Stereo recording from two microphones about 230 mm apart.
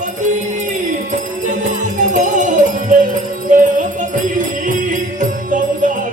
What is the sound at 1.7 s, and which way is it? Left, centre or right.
Music, right.